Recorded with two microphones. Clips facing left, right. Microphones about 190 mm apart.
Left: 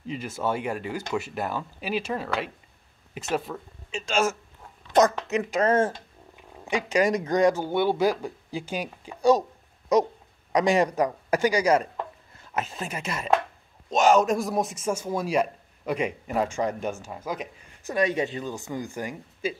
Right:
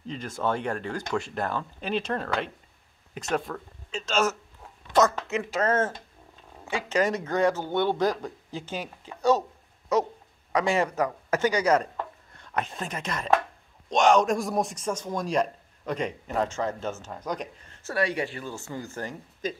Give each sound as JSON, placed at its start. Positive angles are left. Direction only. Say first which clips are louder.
{"t": 0.0, "sound": "a man's voice", "louder": "left 1 dB", "side_deg": 5}
{"t": 17.8, "sound": "a man's voice", "louder": "left 3 dB", "side_deg": 20}